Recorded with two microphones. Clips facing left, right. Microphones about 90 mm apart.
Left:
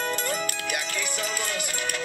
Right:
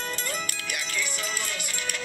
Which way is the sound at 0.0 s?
45° left (ahead or behind).